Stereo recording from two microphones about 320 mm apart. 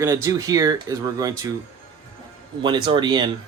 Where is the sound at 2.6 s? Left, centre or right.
Centre.